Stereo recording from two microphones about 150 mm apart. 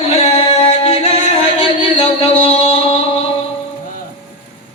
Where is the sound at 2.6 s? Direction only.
40° left (ahead or behind).